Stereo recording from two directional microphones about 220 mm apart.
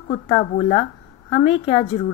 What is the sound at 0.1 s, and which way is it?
Speech, 25° left (ahead or behind).